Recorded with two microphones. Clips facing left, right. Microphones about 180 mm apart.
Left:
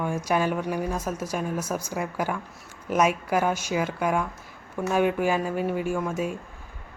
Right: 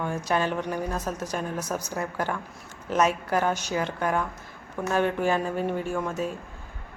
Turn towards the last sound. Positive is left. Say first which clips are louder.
# left 2 dB
turn(degrees=10)  # may be behind; listen again after turning